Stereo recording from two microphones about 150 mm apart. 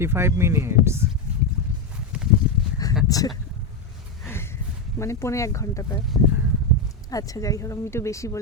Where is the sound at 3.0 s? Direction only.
25° left (ahead or behind).